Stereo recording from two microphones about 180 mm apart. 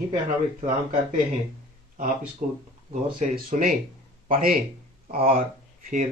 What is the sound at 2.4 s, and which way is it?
Speech, 45° right (ahead or behind).